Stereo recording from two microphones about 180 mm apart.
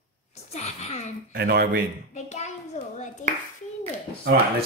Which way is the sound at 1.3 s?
60° right (ahead or behind).